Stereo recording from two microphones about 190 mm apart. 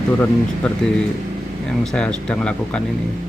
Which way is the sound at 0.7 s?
5° left (ahead or behind).